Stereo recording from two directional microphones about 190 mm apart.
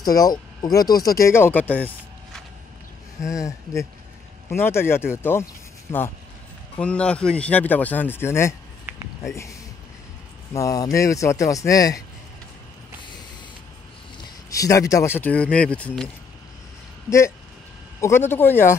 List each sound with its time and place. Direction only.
0.0 s speech: 20° left (ahead or behind)
4.5 s speech: 10° left (ahead or behind)
14.5 s speech: 15° left (ahead or behind)
18.0 s speech: 10° left (ahead or behind)